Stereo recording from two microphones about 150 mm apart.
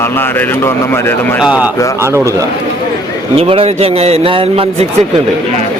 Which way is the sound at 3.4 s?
40° right (ahead or behind).